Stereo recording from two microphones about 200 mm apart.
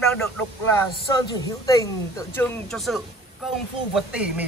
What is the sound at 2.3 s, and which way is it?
Speech, 5° left (ahead or behind).